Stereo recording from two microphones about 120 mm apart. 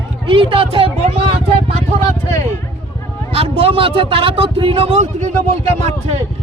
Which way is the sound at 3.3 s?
50° right (ahead or behind).